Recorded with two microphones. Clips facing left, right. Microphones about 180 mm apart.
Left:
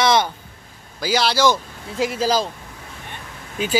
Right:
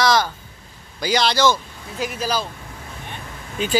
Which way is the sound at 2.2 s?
30° left (ahead or behind).